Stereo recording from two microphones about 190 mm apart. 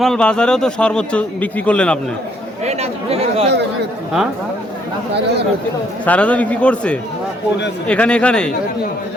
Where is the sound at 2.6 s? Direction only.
35° right (ahead or behind).